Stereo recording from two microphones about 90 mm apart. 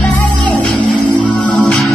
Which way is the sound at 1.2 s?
15° left (ahead or behind).